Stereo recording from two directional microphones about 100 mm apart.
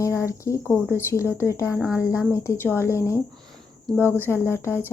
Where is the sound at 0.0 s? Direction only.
30° left (ahead or behind).